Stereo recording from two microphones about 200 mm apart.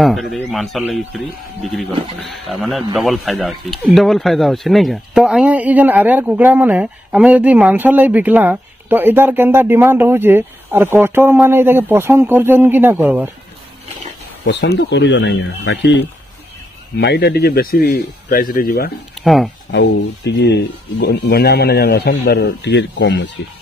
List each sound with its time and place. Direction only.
0.0 s speech: centre (ahead or behind)
14.4 s speech: 60° left (ahead or behind)
17.0 s a man's voice: 55° left (ahead or behind)
19.2 s speech: centre (ahead or behind)
19.7 s speech: 60° left (ahead or behind)